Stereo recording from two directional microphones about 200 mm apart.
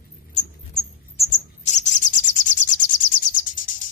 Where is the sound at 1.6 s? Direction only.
35° left (ahead or behind).